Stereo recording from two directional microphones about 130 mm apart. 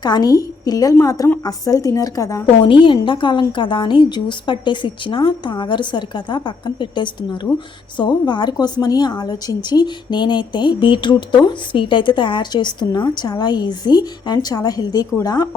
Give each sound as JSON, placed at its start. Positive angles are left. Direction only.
{"t": 0.0, "sound": "a woman's voice", "side_deg": 30}
{"t": 2.6, "sound": "a woman's voice", "side_deg": 40}